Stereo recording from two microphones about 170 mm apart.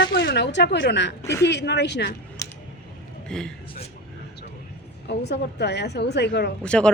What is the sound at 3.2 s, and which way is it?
Speech, 5° left (ahead or behind).